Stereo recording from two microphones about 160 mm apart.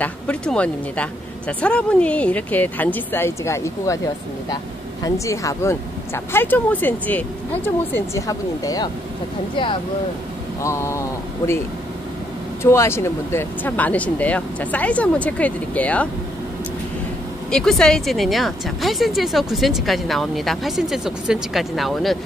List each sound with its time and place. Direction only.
0.0 s speech: 10° left (ahead or behind)
5.0 s speech: 20° left (ahead or behind)
10.6 s speech: 15° left (ahead or behind)
12.6 s speech: 15° left (ahead or behind)
17.5 s speech: 5° left (ahead or behind)